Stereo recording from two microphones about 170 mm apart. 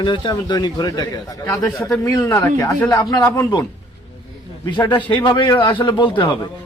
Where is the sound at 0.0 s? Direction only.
25° left (ahead or behind).